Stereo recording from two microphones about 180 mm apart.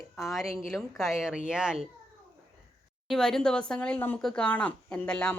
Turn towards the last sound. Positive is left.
turn(degrees=5)  # may be behind; listen again after turning